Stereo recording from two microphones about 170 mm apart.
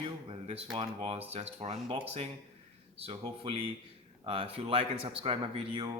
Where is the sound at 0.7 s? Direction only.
35° right (ahead or behind).